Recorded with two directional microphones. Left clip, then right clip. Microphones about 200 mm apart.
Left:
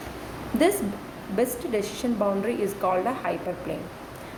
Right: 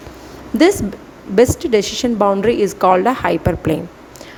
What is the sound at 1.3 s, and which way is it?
A woman's voice, 45° right (ahead or behind).